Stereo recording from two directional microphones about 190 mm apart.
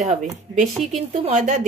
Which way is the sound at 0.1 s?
40° right (ahead or behind).